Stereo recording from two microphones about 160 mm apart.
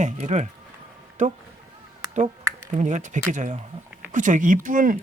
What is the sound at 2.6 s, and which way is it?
Speech, 50° right (ahead or behind).